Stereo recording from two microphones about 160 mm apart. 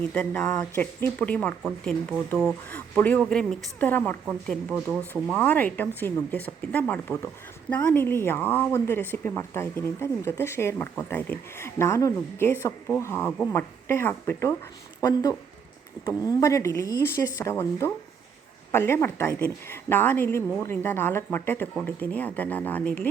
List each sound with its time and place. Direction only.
0.0 s speech: 10° left (ahead or behind)
4.7 s speech: 10° right (ahead or behind)
5.3 s speech: 10° left (ahead or behind)